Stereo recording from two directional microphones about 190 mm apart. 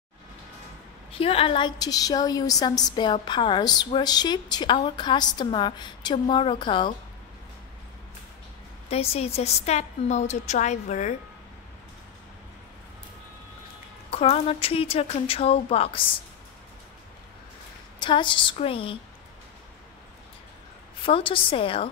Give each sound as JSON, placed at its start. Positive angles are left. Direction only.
{"t": 1.1, "sound": "a woman's voice", "side_deg": 30}
{"t": 8.9, "sound": "a woman's voice", "side_deg": 30}
{"t": 14.1, "sound": "a woman's voice", "side_deg": 30}
{"t": 17.9, "sound": "a woman's voice", "side_deg": 25}
{"t": 21.0, "sound": "a woman's voice", "side_deg": 30}